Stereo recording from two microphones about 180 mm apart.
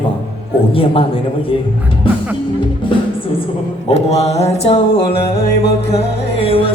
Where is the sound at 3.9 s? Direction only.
35° left (ahead or behind).